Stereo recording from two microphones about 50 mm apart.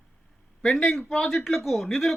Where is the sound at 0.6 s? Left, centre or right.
Centre.